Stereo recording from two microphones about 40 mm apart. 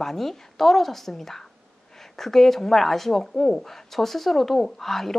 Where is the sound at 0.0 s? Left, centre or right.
Centre.